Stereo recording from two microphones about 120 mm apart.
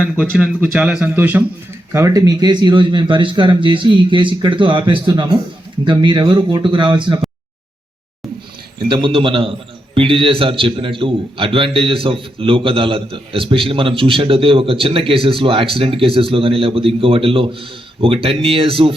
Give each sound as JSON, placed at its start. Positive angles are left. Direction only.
{"t": 0.2, "sound": "speech", "side_deg": -10}
{"t": 1.9, "sound": "a man's voice", "side_deg": -25}
{"t": 8.9, "sound": "a man's voice", "side_deg": -45}